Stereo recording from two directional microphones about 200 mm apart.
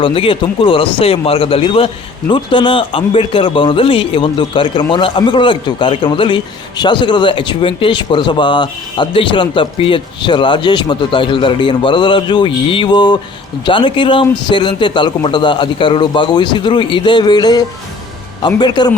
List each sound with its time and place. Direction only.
0.0 s a man's voice: 25° left (ahead or behind)